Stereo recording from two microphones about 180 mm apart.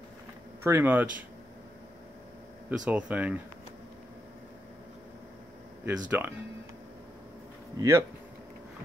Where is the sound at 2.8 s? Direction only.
5° right (ahead or behind).